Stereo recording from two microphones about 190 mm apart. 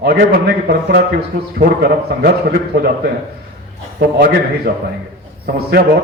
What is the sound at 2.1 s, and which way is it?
Speech, 50° right (ahead or behind).